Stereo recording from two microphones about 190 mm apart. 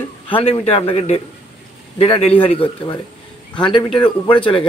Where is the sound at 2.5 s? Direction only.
30° left (ahead or behind).